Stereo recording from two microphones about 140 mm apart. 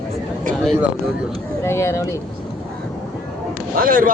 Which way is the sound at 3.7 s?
85° right.